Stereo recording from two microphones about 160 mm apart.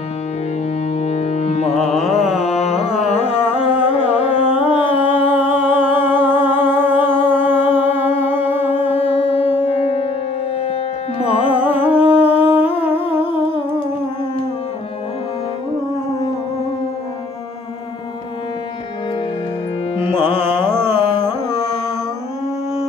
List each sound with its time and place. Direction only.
0.9 s foghorn: 45° left (ahead or behind)
1.7 s carnatic music: centre (ahead or behind)
2.4 s carnatic music: 40° left (ahead or behind)
4.6 s humming: 10° right (ahead or behind)
9.3 s music: 35° left (ahead or behind)
11.5 s humming: 10° right (ahead or behind)
20.2 s carnatic music: 15° right (ahead or behind)